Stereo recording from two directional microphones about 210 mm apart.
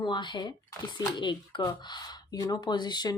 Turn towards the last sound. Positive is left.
turn(degrees=20)  # may be behind; listen again after turning